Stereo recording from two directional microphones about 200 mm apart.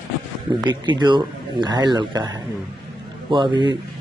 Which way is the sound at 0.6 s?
20° right (ahead or behind).